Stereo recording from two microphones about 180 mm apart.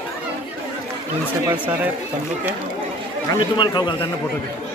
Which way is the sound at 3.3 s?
25° left (ahead or behind).